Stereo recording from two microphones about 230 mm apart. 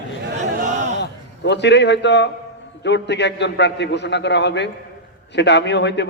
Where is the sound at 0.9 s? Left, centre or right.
Left.